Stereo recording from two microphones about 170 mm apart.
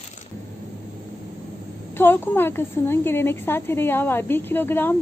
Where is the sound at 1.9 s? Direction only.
15° left (ahead or behind).